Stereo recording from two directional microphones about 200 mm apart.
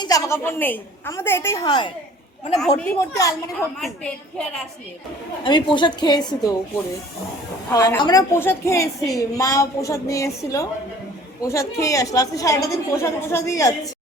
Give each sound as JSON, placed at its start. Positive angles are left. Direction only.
{"t": 0.0, "sound": "a woman's voice", "side_deg": 15}
{"t": 1.6, "sound": "a woman's voice", "side_deg": 20}
{"t": 2.6, "sound": "a woman's voice", "side_deg": 5}
{"t": 3.2, "sound": "a woman's voice", "side_deg": 15}
{"t": 3.8, "sound": "a woman's voice", "side_deg": 0}
{"t": 5.4, "sound": "a woman's voice", "side_deg": 25}
{"t": 7.7, "sound": "a woman's voice", "side_deg": 15}